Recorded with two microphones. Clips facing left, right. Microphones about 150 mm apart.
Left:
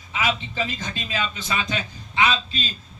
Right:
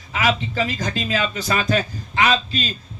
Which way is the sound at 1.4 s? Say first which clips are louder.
Right 7 dB; 40° right (ahead or behind).